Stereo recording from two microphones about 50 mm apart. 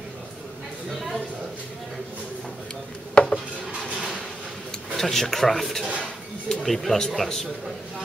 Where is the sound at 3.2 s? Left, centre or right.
Centre.